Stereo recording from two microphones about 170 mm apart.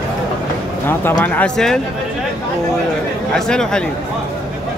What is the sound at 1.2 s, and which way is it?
Speech, 10° left (ahead or behind).